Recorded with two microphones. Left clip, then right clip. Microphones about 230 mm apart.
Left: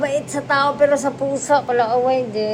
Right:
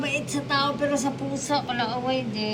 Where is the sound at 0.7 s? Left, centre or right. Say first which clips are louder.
Left 9 dB; centre.